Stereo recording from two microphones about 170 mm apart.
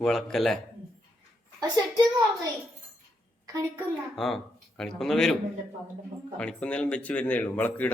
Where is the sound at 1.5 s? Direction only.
20° right (ahead or behind).